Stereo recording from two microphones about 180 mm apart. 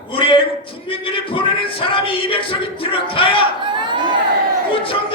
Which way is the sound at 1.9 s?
30° left (ahead or behind).